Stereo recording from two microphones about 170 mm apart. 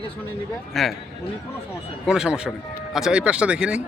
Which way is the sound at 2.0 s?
5° right (ahead or behind).